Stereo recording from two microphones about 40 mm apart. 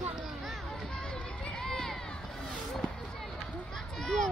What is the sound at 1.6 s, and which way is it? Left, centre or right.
Run, centre.